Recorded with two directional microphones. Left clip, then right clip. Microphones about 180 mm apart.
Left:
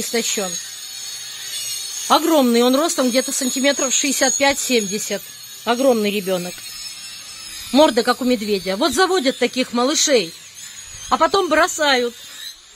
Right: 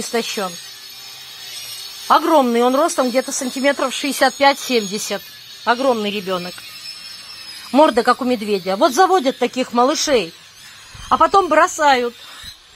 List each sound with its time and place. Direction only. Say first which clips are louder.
0.1 s speech: right 1 dB; 15° left (ahead or behind)
2.0 s speech: right 2 dB; 20° left (ahead or behind)
2.4 s speech: right 1 dB; 35° left (ahead or behind)
7.7 s speech: right 2 dB; 20° left (ahead or behind)
11.1 s speech: right 2 dB; 10° left (ahead or behind)
11.3 s speech: right 3 dB; 30° left (ahead or behind)